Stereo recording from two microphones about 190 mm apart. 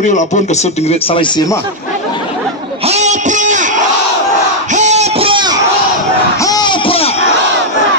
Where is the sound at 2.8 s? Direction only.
35° right (ahead or behind).